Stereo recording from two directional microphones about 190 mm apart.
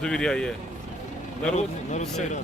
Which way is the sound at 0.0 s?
5° left (ahead or behind).